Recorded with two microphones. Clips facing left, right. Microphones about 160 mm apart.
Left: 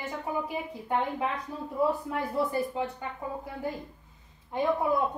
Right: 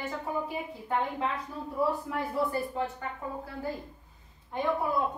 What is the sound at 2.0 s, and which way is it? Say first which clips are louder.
Speech: left 1 dB; 20° left (ahead or behind).